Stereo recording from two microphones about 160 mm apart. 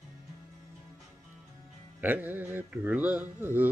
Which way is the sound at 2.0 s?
10° right (ahead or behind).